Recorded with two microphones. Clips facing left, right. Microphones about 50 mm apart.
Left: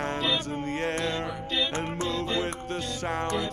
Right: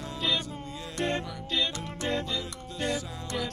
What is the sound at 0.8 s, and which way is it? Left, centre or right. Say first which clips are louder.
Music: right 1 dB; left.